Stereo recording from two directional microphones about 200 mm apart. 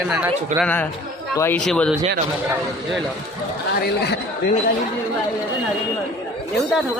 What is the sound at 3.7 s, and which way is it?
Speech, 50° left (ahead or behind).